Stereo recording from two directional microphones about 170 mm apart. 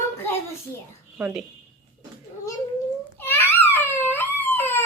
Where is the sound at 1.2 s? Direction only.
5° right (ahead or behind).